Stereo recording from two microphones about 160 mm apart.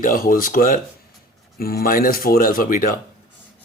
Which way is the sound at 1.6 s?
70° left (ahead or behind).